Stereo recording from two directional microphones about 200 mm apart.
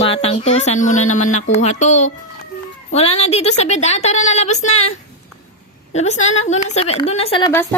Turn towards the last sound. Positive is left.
turn(degrees=25)  # may be behind; listen again after turning